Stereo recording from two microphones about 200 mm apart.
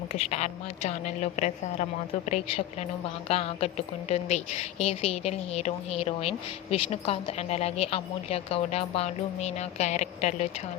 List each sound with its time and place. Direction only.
0.1 s a woman's voice: 30° left (ahead or behind)